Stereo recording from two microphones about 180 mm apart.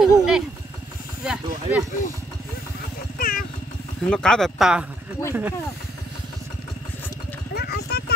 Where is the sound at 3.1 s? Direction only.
50° left (ahead or behind).